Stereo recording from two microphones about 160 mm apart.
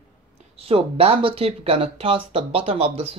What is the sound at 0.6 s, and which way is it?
Speech, 35° right (ahead or behind).